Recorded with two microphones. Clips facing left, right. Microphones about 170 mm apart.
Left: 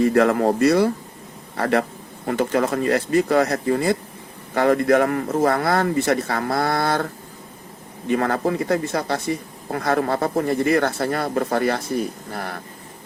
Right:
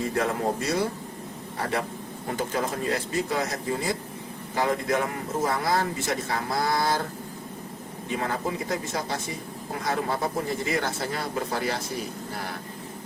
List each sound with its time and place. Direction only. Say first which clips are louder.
0.0 s speech: left 9 dB; 70° left (ahead or behind)